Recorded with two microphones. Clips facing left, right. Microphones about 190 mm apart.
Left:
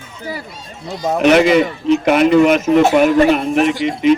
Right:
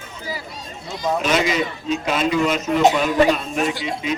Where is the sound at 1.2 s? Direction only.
65° left (ahead or behind).